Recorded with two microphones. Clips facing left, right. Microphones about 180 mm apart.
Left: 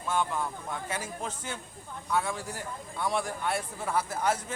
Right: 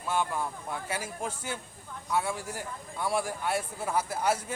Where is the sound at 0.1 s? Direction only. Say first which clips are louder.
Even; 10° right (ahead or behind).